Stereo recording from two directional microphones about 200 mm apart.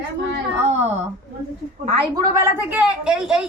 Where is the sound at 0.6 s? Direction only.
35° right (ahead or behind).